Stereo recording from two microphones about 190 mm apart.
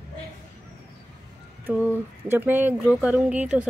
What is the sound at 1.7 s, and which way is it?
Speech, 10° right (ahead or behind).